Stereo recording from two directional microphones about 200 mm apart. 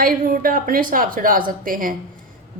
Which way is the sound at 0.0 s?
45° right (ahead or behind).